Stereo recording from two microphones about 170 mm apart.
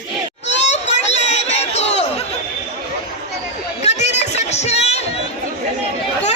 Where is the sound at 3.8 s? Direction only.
40° left (ahead or behind).